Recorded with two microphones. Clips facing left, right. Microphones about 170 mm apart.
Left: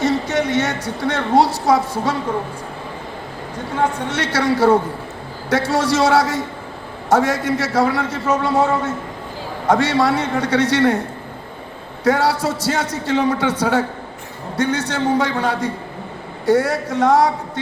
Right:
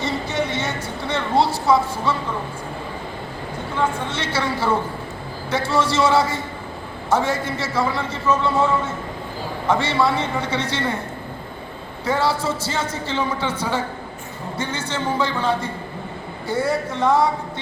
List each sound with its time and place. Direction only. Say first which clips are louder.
0.0 s a sound: left 5 dB; 75° left (ahead or behind)
1.4 s a man's voice: left 2 dB; 75° left (ahead or behind)
4.1 s a man's voice: left 5 dB; 75° left (ahead or behind)
12.0 s a man's voice: left 4 dB; 75° left (ahead or behind)